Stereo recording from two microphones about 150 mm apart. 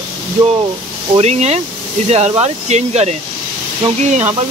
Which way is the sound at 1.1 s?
45° right (ahead or behind).